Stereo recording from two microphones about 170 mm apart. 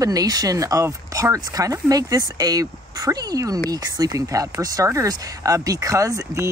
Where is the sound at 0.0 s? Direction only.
20° right (ahead or behind).